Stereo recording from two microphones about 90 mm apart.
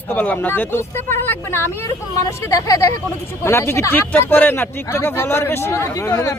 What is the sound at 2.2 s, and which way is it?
Speech, 40° left (ahead or behind).